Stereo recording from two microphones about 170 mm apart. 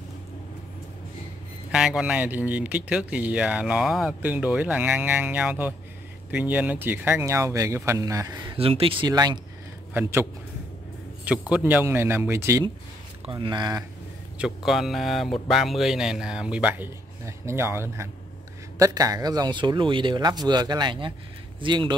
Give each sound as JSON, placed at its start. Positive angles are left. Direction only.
{"t": 1.7, "sound": "speech", "side_deg": -5}
{"t": 11.2, "sound": "speech", "side_deg": -10}
{"t": 14.4, "sound": "speech", "side_deg": 0}